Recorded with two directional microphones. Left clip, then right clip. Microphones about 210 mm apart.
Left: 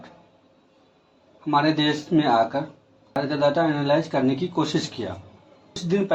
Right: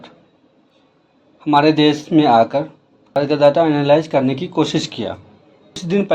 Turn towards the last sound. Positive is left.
turn(degrees=-45)  # may be behind; listen again after turning